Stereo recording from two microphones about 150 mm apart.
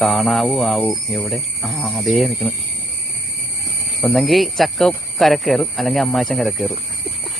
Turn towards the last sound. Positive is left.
turn(degrees=0)  # may be behind; listen again after turning